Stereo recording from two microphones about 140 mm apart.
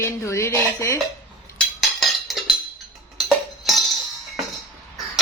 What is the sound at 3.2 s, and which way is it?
Music, centre (ahead or behind).